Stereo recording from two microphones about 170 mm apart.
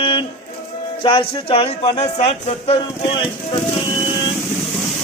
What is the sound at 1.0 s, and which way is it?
Speech, 30° left (ahead or behind).